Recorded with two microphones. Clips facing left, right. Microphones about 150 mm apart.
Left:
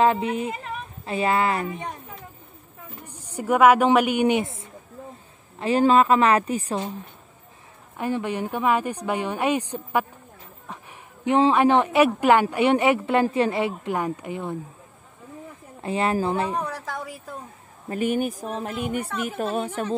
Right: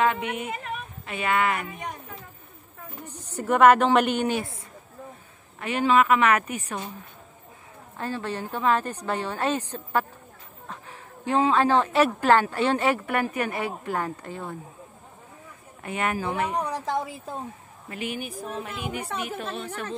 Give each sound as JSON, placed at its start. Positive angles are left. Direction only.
{"t": 0.0, "sound": "speech", "side_deg": 30}
{"t": 3.1, "sound": "speech", "side_deg": 10}
{"t": 5.6, "sound": "speech", "side_deg": 35}
{"t": 8.0, "sound": "speech", "side_deg": 15}
{"t": 15.8, "sound": "speech", "side_deg": 30}
{"t": 16.5, "sound": "speech", "side_deg": -15}
{"t": 17.8, "sound": "a woman's voice", "side_deg": 45}
{"t": 18.4, "sound": "a woman's voice", "side_deg": 35}